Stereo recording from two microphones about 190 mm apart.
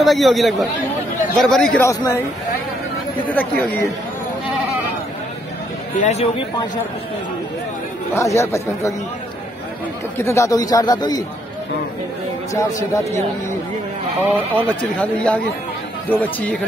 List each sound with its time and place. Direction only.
0.0 s speech: centre (ahead or behind)
1.9 s speech: 15° left (ahead or behind)
3.3 s speech: 10° left (ahead or behind)
5.9 s speech: 35° left (ahead or behind)
8.1 s speech: 15° left (ahead or behind)
10.1 s speech: 15° left (ahead or behind)
12.5 s speech: 15° left (ahead or behind)
14.5 s speech: 5° left (ahead or behind)